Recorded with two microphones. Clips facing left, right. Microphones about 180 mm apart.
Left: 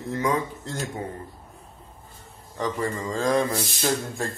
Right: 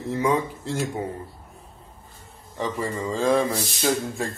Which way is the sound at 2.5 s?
5° right (ahead or behind).